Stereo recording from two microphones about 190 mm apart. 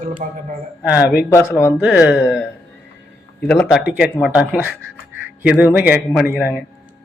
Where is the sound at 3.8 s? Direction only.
5° right (ahead or behind).